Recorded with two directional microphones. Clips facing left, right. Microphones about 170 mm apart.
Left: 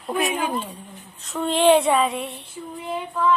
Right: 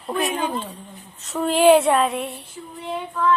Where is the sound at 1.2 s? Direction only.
Centre (ahead or behind).